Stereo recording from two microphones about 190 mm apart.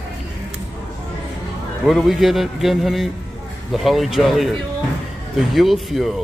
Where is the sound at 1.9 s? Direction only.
Centre (ahead or behind).